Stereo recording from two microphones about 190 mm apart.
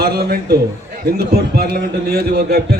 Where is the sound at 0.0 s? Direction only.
55° right (ahead or behind).